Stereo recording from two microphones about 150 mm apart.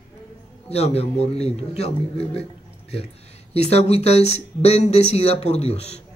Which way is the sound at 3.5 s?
45° left (ahead or behind).